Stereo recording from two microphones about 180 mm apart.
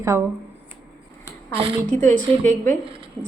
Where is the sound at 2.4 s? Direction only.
10° left (ahead or behind).